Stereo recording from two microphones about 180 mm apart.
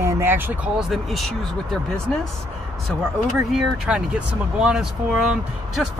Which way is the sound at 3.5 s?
5° right (ahead or behind).